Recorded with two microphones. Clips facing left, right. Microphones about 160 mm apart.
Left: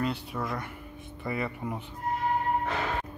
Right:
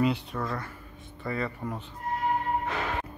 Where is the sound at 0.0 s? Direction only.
Centre (ahead or behind).